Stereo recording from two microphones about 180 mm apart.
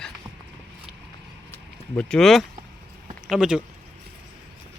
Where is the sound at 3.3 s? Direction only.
5° right (ahead or behind).